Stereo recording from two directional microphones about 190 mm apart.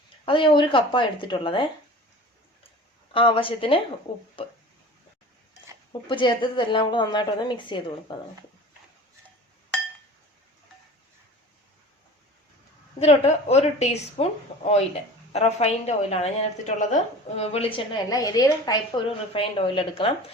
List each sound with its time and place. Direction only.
0.3 s a woman's voice: 25° left (ahead or behind)
3.1 s a woman's voice: 30° left (ahead or behind)
5.9 s a woman's voice: 25° left (ahead or behind)
13.0 s a woman's voice: 35° left (ahead or behind)